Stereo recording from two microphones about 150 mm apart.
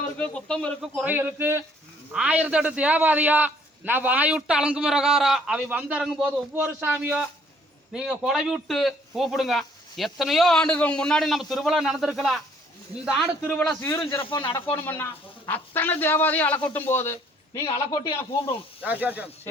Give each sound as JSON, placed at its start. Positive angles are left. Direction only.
{"t": 0.2, "sound": "a man's voice", "side_deg": 5}
{"t": 1.1, "sound": "a man's voice", "side_deg": -15}
{"t": 13.4, "sound": "a man's voice", "side_deg": 10}
{"t": 14.3, "sound": "speech", "side_deg": 30}
{"t": 14.7, "sound": "a man's voice", "side_deg": 15}
{"t": 18.8, "sound": "a man's voice", "side_deg": -10}